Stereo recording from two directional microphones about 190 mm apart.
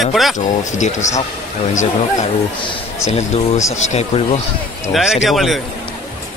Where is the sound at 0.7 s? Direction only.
40° left (ahead or behind).